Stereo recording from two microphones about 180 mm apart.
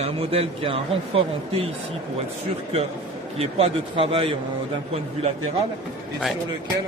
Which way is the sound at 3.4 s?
30° right (ahead or behind).